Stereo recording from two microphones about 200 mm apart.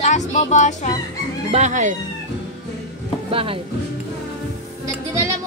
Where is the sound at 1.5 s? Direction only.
35° right (ahead or behind).